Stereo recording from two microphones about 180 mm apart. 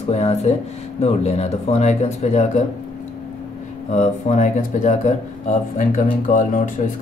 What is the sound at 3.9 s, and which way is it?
Speech, 40° left (ahead or behind).